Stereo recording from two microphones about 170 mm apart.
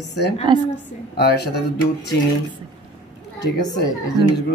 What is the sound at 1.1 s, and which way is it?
Speech, 70° left (ahead or behind).